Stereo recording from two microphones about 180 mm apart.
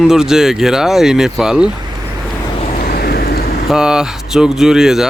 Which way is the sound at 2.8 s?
55° left (ahead or behind).